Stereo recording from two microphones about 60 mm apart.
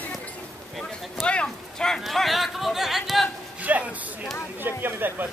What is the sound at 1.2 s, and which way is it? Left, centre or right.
Speech, centre.